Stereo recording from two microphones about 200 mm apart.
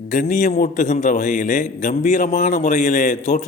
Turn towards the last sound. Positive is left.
turn(degrees=35)  # may be behind; listen again after turning